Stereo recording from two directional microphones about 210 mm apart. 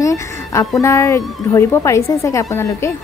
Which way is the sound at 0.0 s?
15° left (ahead or behind).